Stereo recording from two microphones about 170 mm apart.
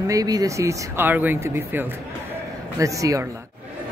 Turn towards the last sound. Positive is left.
turn(degrees=-20)  # may be behind; listen again after turning